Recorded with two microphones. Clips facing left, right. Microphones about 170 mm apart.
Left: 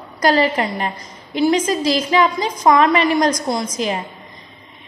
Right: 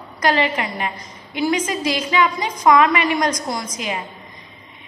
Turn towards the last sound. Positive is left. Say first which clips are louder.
# left 5 dB
turn(degrees=35)  # may be behind; listen again after turning